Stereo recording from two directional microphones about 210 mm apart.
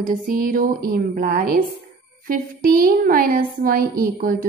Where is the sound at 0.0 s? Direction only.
40° right (ahead or behind).